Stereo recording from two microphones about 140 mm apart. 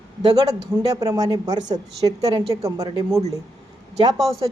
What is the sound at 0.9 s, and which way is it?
A woman's voice, 25° right (ahead or behind).